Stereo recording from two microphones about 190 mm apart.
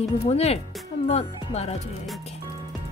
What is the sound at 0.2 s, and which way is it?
Speech, 35° left (ahead or behind).